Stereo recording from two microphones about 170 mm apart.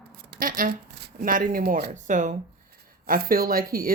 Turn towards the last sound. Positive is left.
turn(degrees=-60)  # may be behind; listen again after turning